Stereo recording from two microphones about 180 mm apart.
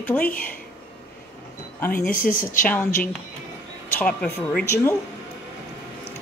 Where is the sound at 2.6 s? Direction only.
5° left (ahead or behind).